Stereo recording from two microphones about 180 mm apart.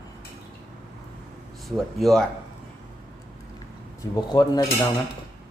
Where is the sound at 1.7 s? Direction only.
Centre (ahead or behind).